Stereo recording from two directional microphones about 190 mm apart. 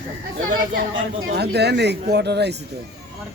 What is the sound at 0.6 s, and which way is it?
Speech, 50° right (ahead or behind).